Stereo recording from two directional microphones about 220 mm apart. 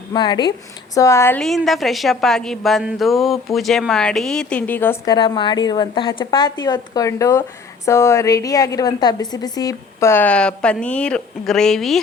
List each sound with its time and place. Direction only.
0.1 s a woman's voice: 20° left (ahead or behind); by 11.9 s centre (ahead or behind)